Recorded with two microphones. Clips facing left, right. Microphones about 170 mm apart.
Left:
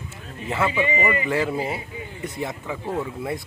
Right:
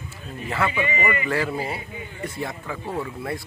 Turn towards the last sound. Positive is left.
turn(degrees=20)  # may be behind; listen again after turning